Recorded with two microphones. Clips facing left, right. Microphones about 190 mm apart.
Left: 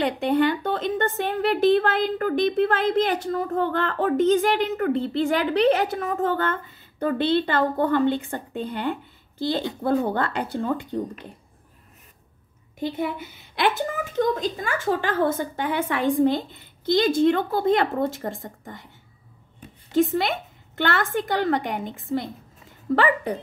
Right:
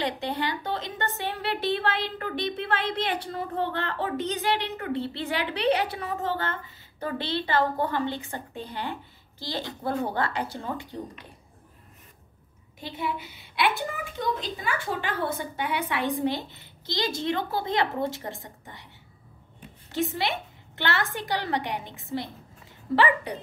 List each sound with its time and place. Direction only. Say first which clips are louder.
0.4 s a woman's voice: left 8 dB; 55° left (ahead or behind)
10.3 s a woman's voice: left 6 dB; 55° left (ahead or behind)
12.8 s a woman's voice: left 5 dB; 50° left (ahead or behind)
19.9 s a woman's voice: left 7 dB; 50° left (ahead or behind)